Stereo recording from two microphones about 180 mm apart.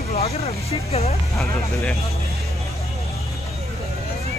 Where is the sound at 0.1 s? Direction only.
35° left (ahead or behind).